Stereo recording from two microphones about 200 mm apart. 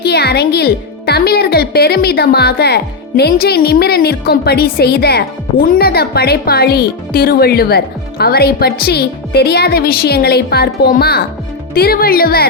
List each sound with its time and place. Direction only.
0.0 s speech: 55° left (ahead or behind)